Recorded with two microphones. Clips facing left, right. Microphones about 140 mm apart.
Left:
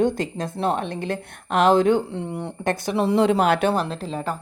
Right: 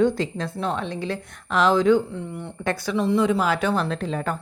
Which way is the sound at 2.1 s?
90° left.